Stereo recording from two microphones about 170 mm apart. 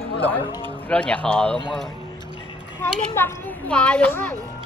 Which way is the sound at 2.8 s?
15° left (ahead or behind).